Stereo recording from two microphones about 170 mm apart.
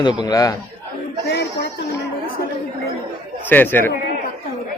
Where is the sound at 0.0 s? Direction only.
25° left (ahead or behind).